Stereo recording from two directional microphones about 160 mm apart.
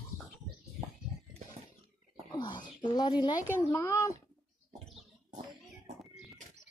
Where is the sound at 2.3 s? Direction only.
30° left (ahead or behind).